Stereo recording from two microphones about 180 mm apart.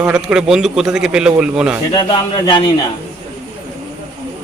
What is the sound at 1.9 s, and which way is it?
Speech, 25° left (ahead or behind).